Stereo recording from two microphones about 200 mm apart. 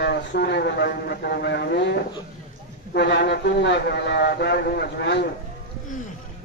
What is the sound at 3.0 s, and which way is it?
A man's voice, 60° left (ahead or behind).